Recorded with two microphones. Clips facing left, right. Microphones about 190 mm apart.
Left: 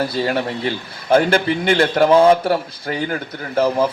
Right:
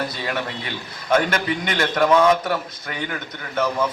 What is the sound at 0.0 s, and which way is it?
A man's voice, 30° left (ahead or behind).